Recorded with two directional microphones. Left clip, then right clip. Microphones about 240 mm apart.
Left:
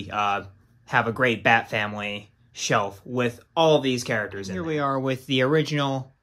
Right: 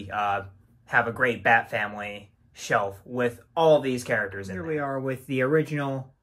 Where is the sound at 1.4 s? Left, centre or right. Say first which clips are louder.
Right 1 dB; left.